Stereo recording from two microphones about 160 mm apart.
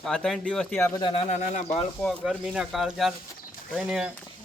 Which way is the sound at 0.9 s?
30° left (ahead or behind).